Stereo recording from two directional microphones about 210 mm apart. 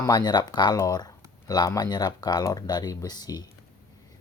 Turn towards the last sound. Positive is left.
turn(degrees=20)  # may be behind; listen again after turning